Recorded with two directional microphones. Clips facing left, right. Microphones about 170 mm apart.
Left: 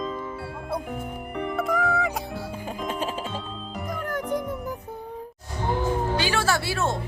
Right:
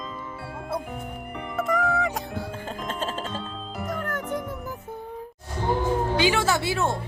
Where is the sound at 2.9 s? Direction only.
15° left (ahead or behind).